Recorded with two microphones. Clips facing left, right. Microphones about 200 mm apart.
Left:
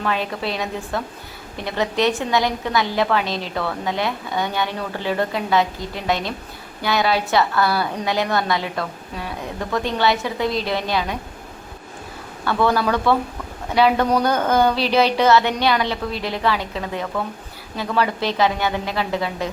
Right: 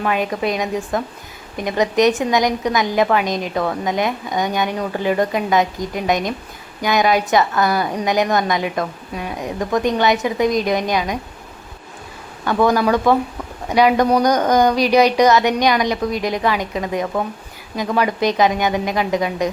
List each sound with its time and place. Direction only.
0.0 s a woman's voice: 15° right (ahead or behind)
12.5 s a woman's voice: 15° right (ahead or behind)